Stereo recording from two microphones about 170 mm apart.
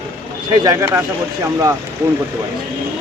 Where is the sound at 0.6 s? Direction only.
20° right (ahead or behind).